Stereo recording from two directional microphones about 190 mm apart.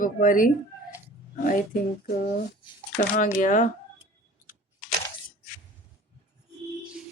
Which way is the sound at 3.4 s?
40° left (ahead or behind).